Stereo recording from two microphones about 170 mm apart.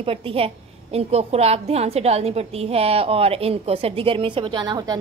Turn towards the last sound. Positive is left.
turn(degrees=-25)  # may be behind; listen again after turning